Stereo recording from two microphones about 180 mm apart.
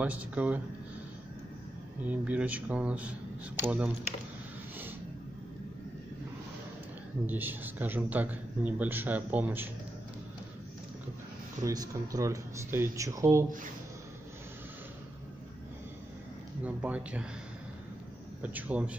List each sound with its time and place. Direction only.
0.0 s a man's voice: 10° right (ahead or behind)
2.0 s a man's voice: 10° right (ahead or behind)
7.2 s a man's voice: 10° right (ahead or behind)
11.6 s a man's voice: 20° right (ahead or behind)
16.6 s a man's voice: 10° right (ahead or behind)
18.4 s a man's voice: 10° right (ahead or behind)